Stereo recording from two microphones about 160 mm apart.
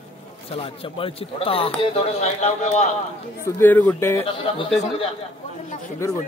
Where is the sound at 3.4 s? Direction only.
15° left (ahead or behind).